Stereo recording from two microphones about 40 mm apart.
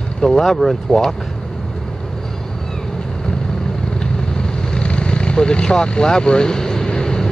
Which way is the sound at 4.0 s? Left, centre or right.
Left.